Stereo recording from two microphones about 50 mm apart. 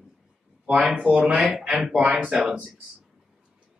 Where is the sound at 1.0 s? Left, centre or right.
Right.